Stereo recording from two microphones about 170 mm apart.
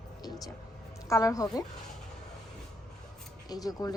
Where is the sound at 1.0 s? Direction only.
20° left (ahead or behind).